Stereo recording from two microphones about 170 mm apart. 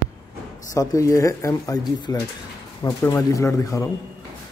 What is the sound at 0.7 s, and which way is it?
Speech, 20° left (ahead or behind).